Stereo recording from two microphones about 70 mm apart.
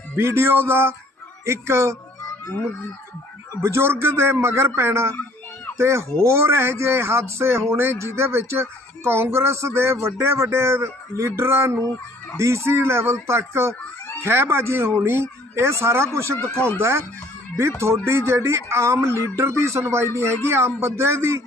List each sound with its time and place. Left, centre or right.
0.2 s speech: right
3.6 s speech: right